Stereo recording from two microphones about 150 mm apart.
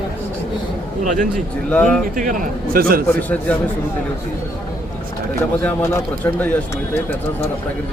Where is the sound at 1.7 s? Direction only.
5° left (ahead or behind).